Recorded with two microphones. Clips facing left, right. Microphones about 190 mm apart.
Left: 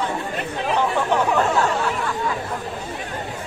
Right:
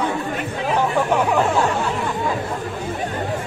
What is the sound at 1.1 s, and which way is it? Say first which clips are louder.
Speech: even; 10° right (ahead or behind).